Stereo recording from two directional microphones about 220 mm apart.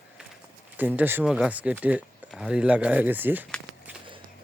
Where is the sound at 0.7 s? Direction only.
10° right (ahead or behind).